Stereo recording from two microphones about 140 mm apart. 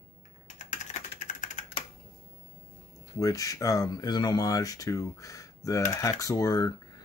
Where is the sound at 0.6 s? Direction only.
60° left (ahead or behind).